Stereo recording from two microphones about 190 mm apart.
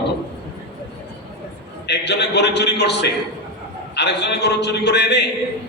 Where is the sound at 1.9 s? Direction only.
65° left (ahead or behind).